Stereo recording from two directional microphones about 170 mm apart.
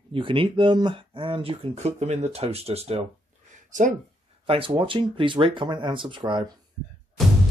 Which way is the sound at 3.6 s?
45° right (ahead or behind).